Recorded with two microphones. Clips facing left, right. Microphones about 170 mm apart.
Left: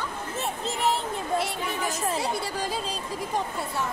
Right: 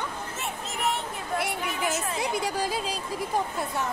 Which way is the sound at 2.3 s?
15° right (ahead or behind).